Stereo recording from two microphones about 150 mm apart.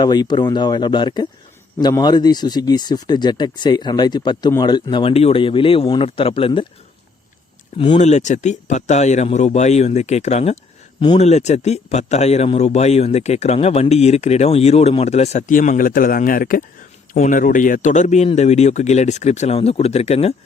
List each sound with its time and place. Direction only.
0.0 s speech: 30° left (ahead or behind)
7.9 s speech: 50° left (ahead or behind)